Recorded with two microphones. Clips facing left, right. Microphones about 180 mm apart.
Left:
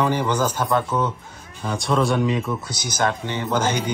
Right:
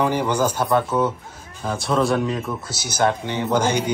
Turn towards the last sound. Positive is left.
turn(degrees=-10)  # may be behind; listen again after turning